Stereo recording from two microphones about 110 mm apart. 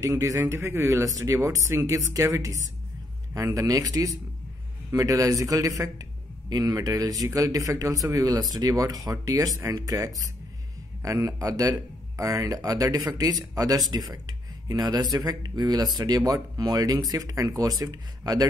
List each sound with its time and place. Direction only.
0.0 s speech: 30° right (ahead or behind)
3.5 s speech: 30° right (ahead or behind)